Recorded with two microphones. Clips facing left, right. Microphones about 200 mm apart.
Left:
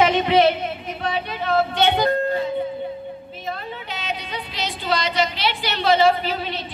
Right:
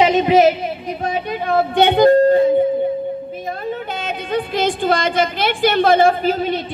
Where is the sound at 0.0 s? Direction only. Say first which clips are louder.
Right 4 dB; 40° right (ahead or behind).